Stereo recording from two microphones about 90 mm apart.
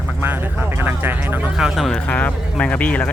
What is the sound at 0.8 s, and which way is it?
Speech, 25° right (ahead or behind).